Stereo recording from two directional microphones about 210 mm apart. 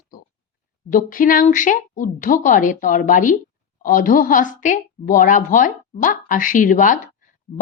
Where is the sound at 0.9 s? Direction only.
40° left (ahead or behind).